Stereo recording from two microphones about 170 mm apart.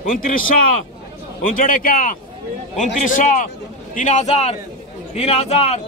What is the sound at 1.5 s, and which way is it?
A man's voice, 55° left (ahead or behind).